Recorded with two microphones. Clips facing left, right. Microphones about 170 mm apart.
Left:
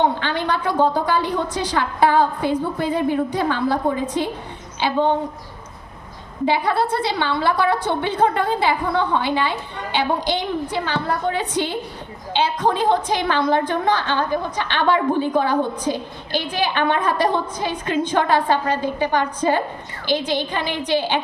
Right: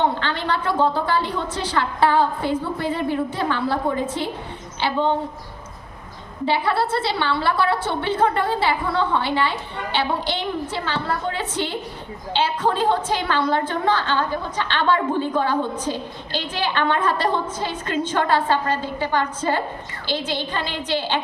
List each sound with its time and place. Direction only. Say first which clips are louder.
0.0 s a woman's voice: left 2 dB; 15° left (ahead or behind)
6.4 s a woman's voice: left 2 dB; 15° left (ahead or behind)